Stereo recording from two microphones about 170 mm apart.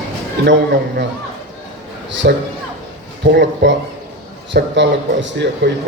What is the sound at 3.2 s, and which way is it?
A man's voice, 90° right.